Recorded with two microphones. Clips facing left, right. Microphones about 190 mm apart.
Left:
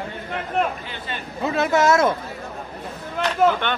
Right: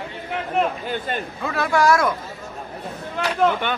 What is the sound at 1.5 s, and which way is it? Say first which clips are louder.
Speech: left 1 dB; 20° left (ahead or behind).